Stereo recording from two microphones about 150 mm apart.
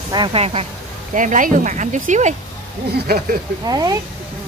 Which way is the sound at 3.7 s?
25° right (ahead or behind).